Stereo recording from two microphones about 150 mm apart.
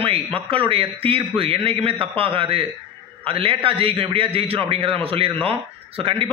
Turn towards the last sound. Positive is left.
turn(degrees=-35)  # may be behind; listen again after turning